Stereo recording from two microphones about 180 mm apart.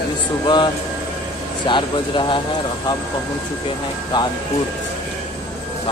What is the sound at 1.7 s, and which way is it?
Speech, 25° left (ahead or behind).